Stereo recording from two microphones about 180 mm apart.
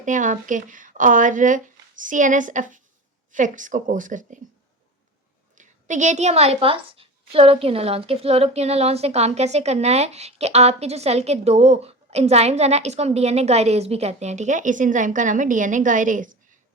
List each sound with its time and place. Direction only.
0.0 s speech: 45° right (ahead or behind)
5.5 s a woman's voice: 45° right (ahead or behind)